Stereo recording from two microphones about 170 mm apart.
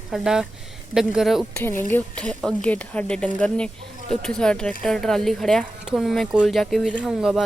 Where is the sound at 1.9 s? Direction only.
10° left (ahead or behind).